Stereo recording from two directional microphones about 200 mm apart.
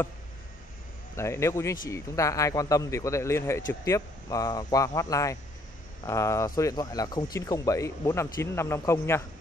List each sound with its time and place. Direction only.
1.1 s speech: 15° left (ahead or behind)